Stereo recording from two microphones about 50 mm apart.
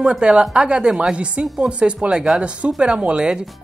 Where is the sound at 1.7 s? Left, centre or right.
Right.